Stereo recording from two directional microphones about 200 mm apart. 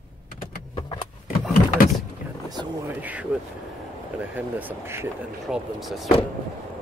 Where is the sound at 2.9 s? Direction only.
10° right (ahead or behind).